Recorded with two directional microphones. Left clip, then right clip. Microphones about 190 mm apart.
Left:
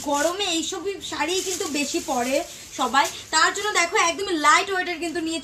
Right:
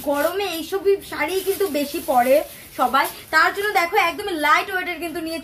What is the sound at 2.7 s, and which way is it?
Speech, 20° right (ahead or behind).